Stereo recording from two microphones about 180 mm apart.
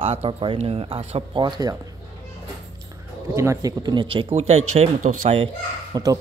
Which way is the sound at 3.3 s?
15° right (ahead or behind).